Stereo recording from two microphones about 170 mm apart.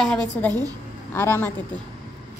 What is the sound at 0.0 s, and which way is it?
Speech, 5° left (ahead or behind).